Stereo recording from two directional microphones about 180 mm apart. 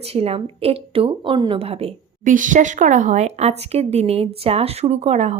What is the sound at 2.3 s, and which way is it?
Speech, 45° right (ahead or behind).